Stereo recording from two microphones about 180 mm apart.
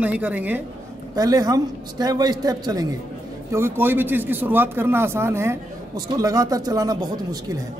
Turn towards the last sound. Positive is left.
turn(degrees=-20)  # may be behind; listen again after turning